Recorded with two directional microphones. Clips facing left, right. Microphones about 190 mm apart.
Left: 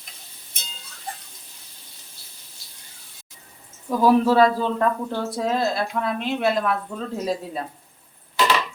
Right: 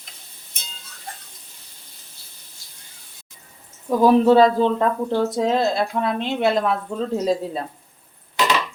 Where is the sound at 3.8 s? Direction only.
20° right (ahead or behind).